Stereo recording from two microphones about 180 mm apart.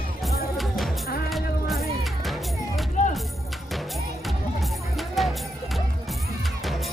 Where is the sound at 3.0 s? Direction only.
40° left (ahead or behind).